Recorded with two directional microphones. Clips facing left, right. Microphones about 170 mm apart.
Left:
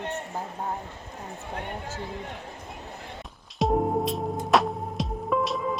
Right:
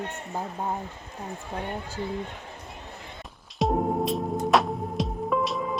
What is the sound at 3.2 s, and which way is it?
Music, centre (ahead or behind).